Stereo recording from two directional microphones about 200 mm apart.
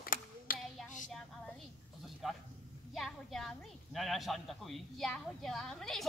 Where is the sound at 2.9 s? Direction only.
Centre (ahead or behind).